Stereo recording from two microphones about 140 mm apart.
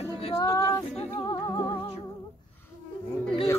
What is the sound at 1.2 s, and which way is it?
Music, 30° left (ahead or behind).